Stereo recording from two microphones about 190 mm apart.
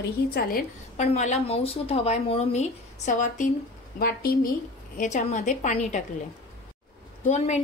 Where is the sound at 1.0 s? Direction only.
35° left (ahead or behind).